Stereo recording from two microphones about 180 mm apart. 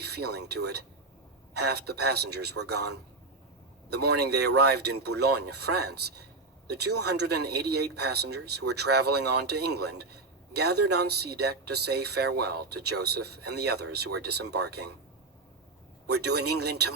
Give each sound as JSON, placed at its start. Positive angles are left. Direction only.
{"t": 0.0, "sound": "speech", "side_deg": -65}
{"t": 3.8, "sound": "speech", "side_deg": -65}
{"t": 16.0, "sound": "speech", "side_deg": -65}